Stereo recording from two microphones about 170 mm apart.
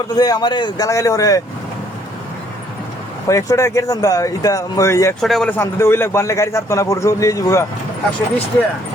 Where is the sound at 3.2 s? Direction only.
20° left (ahead or behind).